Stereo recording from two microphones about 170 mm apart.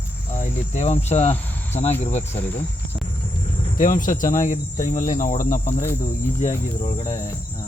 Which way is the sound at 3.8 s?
50° left (ahead or behind).